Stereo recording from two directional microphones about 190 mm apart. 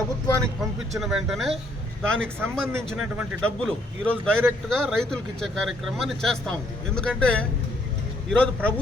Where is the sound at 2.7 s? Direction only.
10° right (ahead or behind).